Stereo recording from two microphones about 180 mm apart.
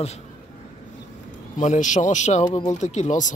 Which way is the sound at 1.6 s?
45° left (ahead or behind).